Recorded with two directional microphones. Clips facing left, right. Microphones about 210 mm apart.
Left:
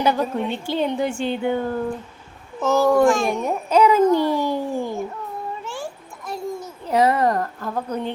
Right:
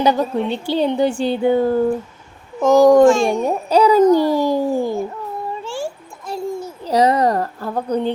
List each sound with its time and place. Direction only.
0.0 s a child's voice: 35° right (ahead or behind)
2.6 s a child's voice: 15° right (ahead or behind)
3.0 s a child's voice: 25° right (ahead or behind)
5.6 s a sound: 30° right (ahead or behind)
6.8 s a child's voice: 35° right (ahead or behind)